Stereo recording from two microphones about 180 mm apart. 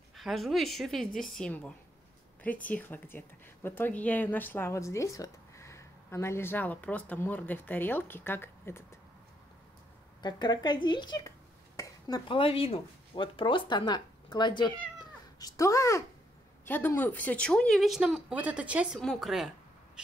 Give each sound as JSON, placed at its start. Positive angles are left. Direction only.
{"t": 0.1, "sound": "a woman's voice", "side_deg": 0}
{"t": 10.2, "sound": "speech", "side_deg": 25}